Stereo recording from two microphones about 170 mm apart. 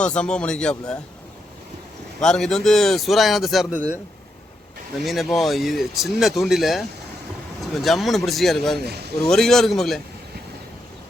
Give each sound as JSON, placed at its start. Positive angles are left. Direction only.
{"t": 0.0, "sound": "speech", "side_deg": 5}
{"t": 2.2, "sound": "speech", "side_deg": 5}
{"t": 5.0, "sound": "speech", "side_deg": 0}
{"t": 8.8, "sound": "speech", "side_deg": -75}
{"t": 9.2, "sound": "speech", "side_deg": 5}